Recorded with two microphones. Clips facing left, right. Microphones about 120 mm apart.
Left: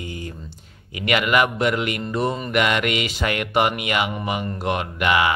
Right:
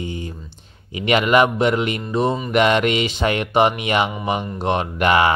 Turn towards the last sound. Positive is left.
turn(degrees=-35)  # may be behind; listen again after turning